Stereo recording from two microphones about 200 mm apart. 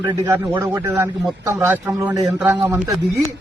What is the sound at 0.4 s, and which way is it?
Speech, 10° right (ahead or behind).